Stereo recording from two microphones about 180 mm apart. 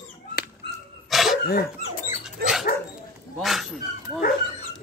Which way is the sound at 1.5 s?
60° left (ahead or behind).